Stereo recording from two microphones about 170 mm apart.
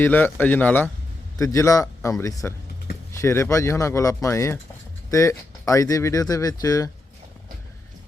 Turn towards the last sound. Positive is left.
turn(degrees=20)  # may be behind; listen again after turning